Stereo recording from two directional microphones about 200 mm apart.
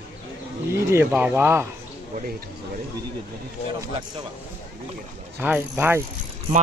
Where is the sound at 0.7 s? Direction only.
10° right (ahead or behind).